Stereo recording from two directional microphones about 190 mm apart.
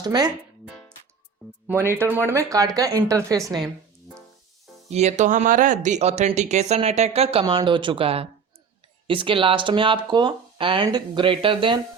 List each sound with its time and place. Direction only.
0.0 s speech: 20° right (ahead or behind)
0.7 s music: 5° left (ahead or behind)
1.6 s a woman's voice: 10° right (ahead or behind)
4.9 s speech: 35° right (ahead or behind)